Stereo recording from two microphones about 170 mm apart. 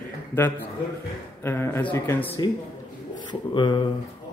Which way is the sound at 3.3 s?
25° left (ahead or behind).